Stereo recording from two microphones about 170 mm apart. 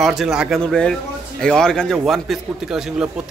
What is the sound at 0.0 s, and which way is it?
A man's voice, centre (ahead or behind).